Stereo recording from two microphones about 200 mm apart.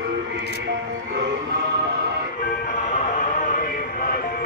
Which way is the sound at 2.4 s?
40° left (ahead or behind).